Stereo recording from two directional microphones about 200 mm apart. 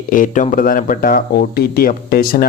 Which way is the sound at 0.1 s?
40° left (ahead or behind).